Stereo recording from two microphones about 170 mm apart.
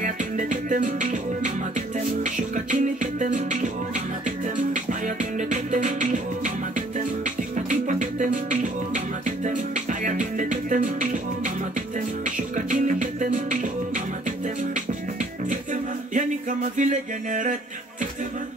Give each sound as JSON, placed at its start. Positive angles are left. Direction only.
{"t": 0.0, "sound": "music", "side_deg": -50}
{"t": 2.5, "sound": "music", "side_deg": -50}
{"t": 5.0, "sound": "music", "side_deg": -45}
{"t": 7.5, "sound": "music", "side_deg": -50}
{"t": 12.5, "sound": "music", "side_deg": -50}
{"t": 16.7, "sound": "music", "side_deg": -50}